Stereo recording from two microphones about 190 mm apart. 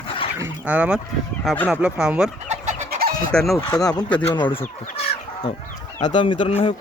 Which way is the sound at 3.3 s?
Centre (ahead or behind).